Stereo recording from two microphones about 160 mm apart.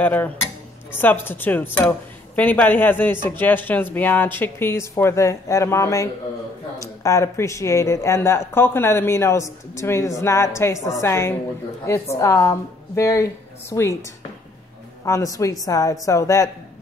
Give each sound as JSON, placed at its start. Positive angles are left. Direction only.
{"t": 0.0, "sound": "speech", "side_deg": 10}
{"t": 15.0, "sound": "a woman's voice", "side_deg": 20}